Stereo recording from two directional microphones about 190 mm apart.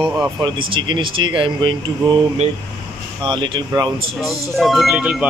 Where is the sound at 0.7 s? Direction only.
25° right (ahead or behind).